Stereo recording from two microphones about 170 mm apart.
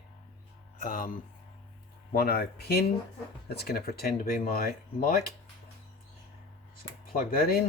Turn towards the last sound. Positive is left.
turn(degrees=60)  # may be behind; listen again after turning